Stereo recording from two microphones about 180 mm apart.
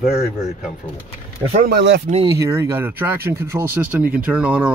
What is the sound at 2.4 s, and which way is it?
Speech, 15° right (ahead or behind).